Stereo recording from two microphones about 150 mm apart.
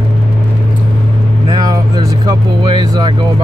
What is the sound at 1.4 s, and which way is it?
Vehicle, 30° right (ahead or behind).